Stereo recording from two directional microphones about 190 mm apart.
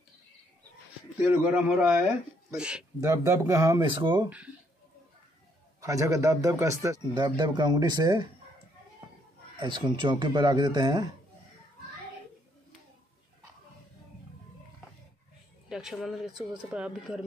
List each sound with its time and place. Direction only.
1.1 s speech: 10° right (ahead or behind)
3.0 s speech: 15° right (ahead or behind)
5.8 s a man's voice: 15° right (ahead or behind)
9.6 s a man's voice: 25° right (ahead or behind)
15.7 s speech: centre (ahead or behind)